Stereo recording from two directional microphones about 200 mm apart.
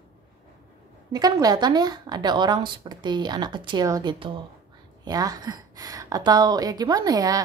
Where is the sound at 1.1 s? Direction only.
20° right (ahead or behind).